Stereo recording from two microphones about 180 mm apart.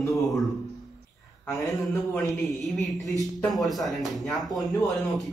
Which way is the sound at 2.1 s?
Centre (ahead or behind).